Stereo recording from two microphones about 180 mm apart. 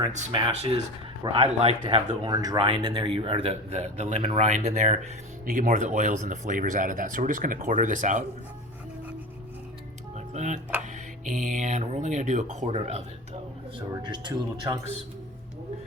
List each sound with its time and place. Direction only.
0.3 s speech: 30° right (ahead or behind)
2.2 s a man's voice: 20° right (ahead or behind); by 8.2 s 45° right (ahead or behind)
10.2 s music: 40° right (ahead or behind)
10.9 s a man's voice: 45° right (ahead or behind)
13.9 s speech: 25° right (ahead or behind)